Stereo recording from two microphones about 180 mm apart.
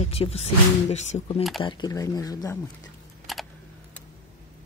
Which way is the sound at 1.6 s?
25° left (ahead or behind).